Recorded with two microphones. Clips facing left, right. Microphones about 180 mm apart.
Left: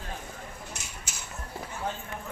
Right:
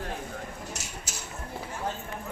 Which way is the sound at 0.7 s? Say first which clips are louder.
Right 3 dB; 40° right (ahead or behind).